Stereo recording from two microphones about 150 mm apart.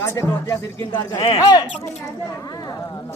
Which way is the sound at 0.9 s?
35° left (ahead or behind).